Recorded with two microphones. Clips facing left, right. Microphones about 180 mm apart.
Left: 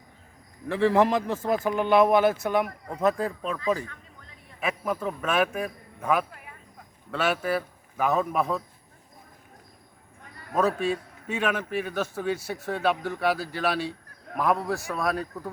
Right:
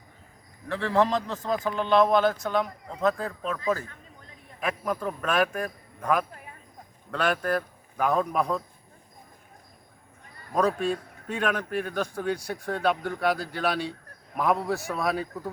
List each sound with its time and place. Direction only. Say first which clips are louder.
0.7 s speech: left 3 dB; 15° left (ahead or behind)
4.6 s a man's voice: even; 5° left (ahead or behind)
10.5 s a man's voice: even; 5° left (ahead or behind)